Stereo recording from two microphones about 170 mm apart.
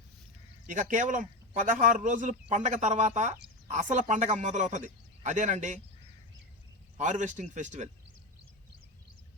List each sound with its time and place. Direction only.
0.7 s speech: 50° right (ahead or behind)
6.9 s speech: 45° right (ahead or behind)